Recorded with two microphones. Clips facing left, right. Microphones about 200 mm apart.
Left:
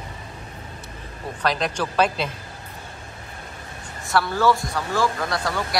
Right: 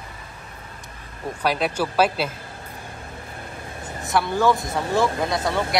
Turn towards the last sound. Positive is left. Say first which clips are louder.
# right 2 dB
turn(degrees=-20)  # may be behind; listen again after turning